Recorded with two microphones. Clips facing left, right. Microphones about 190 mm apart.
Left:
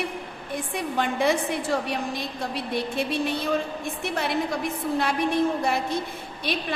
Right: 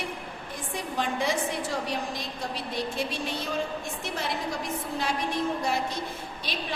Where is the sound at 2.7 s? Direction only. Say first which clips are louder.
Left 6 dB; 60° left (ahead or behind).